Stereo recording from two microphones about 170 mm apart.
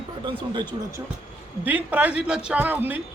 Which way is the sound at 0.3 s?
25° right (ahead or behind).